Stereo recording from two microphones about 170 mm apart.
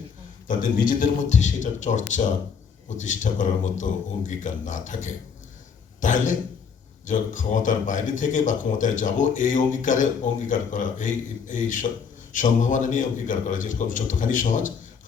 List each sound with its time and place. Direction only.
0.4 s speech: 50° left (ahead or behind)